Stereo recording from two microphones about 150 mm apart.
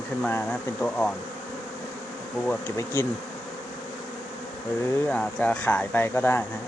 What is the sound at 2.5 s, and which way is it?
Speech, 15° left (ahead or behind).